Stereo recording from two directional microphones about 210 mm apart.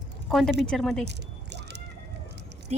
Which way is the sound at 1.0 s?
55° right (ahead or behind).